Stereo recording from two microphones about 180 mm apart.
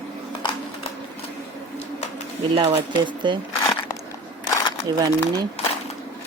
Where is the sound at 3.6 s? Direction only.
20° left (ahead or behind).